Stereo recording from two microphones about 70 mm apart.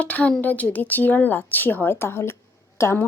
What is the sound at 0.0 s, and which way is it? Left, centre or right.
Speech, left.